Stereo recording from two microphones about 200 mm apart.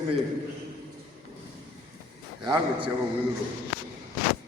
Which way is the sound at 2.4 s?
20° right (ahead or behind).